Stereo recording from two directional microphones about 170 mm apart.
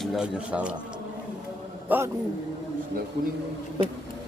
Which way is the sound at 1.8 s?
10° right (ahead or behind).